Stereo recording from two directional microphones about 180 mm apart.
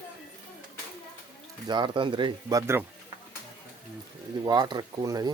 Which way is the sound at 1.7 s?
25° right (ahead or behind).